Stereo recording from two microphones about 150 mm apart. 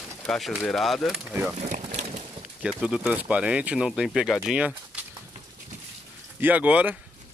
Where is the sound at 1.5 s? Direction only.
45° right (ahead or behind).